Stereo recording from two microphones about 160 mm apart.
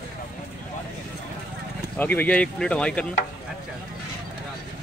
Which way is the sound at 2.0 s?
10° left (ahead or behind).